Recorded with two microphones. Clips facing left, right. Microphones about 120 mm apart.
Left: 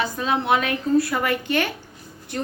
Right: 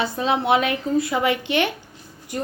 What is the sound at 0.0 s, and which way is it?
A woman's voice, 30° right (ahead or behind).